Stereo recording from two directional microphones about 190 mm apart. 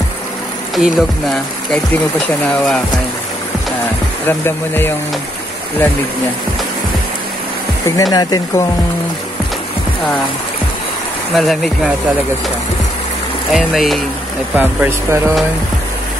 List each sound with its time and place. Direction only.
0.7 s speech: centre (ahead or behind)
4.3 s speech: 10° left (ahead or behind)
7.8 s speech: 20° left (ahead or behind)
11.3 s speech: centre (ahead or behind)
13.5 s speech: centre (ahead or behind)